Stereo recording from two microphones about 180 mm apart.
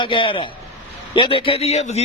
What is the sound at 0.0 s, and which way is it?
A man's voice, 30° left (ahead or behind).